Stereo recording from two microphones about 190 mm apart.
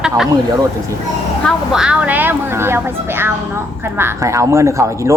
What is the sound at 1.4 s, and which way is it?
Speech, 5° right (ahead or behind).